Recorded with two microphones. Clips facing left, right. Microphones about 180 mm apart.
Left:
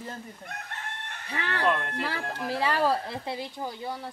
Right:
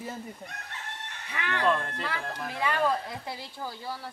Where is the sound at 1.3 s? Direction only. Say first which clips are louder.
Even; 35° left (ahead or behind).